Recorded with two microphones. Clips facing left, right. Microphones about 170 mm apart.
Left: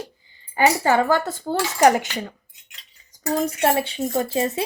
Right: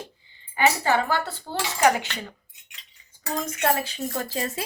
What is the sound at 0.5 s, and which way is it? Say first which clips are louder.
Speech: left 4 dB; 40° left (ahead or behind).